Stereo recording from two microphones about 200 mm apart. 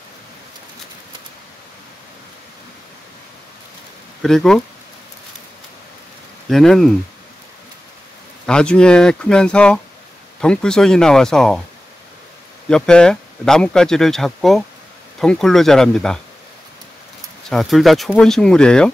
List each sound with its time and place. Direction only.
4.2 s speech: centre (ahead or behind)
6.5 s speech: centre (ahead or behind)
8.5 s speech: 5° left (ahead or behind)
12.6 s speech: 5° left (ahead or behind)
17.5 s speech: centre (ahead or behind)